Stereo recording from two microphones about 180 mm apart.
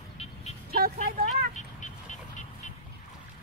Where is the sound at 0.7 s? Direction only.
55° right (ahead or behind).